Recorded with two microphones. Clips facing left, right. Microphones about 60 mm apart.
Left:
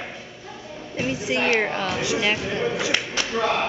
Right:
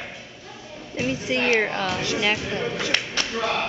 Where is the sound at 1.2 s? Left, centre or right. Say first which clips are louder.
Even; centre.